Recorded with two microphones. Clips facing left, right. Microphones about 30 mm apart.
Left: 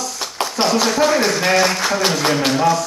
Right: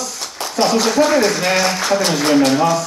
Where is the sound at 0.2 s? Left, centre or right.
Centre.